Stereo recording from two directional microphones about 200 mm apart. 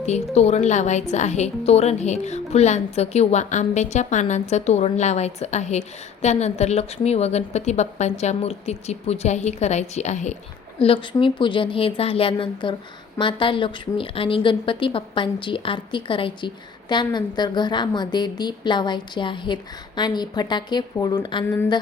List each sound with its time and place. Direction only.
0.0 s a woman's voice: 35° left (ahead or behind)
21.4 s speech: 10° left (ahead or behind)